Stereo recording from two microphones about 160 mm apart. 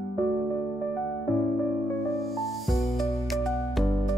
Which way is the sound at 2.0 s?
Centre (ahead or behind).